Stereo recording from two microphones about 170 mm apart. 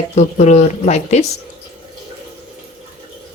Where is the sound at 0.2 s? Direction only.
45° left (ahead or behind).